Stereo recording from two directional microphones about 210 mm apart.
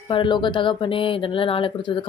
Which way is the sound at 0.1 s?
25° left (ahead or behind).